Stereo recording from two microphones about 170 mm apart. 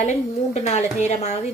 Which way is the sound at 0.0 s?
40° left (ahead or behind).